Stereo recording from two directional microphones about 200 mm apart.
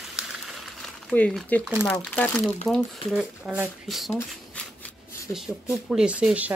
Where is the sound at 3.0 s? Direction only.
5° right (ahead or behind).